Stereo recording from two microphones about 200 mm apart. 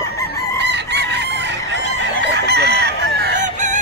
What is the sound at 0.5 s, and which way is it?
Chicken, 60° right (ahead or behind).